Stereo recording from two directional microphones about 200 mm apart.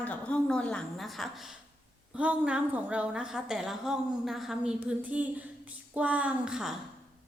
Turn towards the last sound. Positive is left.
turn(degrees=-5)  # may be behind; listen again after turning